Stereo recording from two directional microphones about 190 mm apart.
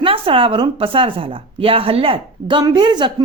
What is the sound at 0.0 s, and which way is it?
Speech, 30° right (ahead or behind).